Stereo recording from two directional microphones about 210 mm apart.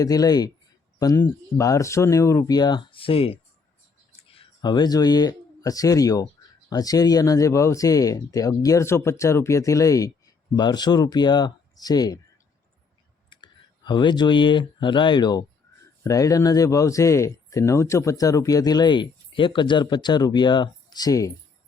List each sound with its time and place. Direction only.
0.0 s speech: 20° left (ahead or behind)
13.3 s speech: 20° left (ahead or behind)